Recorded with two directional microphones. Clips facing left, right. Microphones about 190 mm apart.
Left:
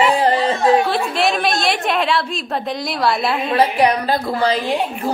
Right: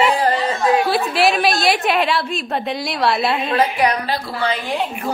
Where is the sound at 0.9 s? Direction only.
5° right (ahead or behind).